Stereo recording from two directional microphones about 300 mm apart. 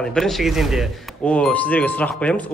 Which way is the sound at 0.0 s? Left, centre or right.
Centre.